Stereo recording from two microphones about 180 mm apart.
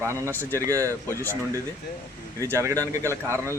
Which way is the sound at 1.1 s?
10° left (ahead or behind).